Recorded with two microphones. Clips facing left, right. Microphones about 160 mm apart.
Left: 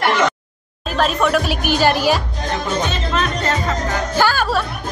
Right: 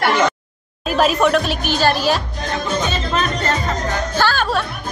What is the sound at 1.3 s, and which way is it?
Speech, 10° left (ahead or behind).